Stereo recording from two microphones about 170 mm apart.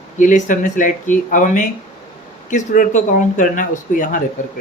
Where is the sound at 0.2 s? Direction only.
50° left (ahead or behind).